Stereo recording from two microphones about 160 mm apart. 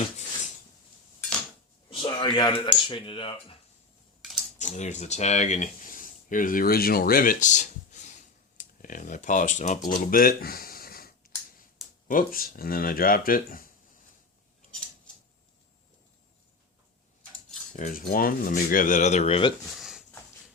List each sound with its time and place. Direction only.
1.9 s speech: 30° left (ahead or behind)
4.5 s speech: 45° left (ahead or behind); by 13.7 s 65° left (ahead or behind)
17.7 s speech: 55° left (ahead or behind); by 19.5 s 40° left (ahead or behind)
19.6 s a sound: centre (ahead or behind)